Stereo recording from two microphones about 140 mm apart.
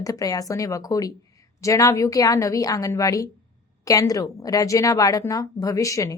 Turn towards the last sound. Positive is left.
turn(degrees=25)  # may be behind; listen again after turning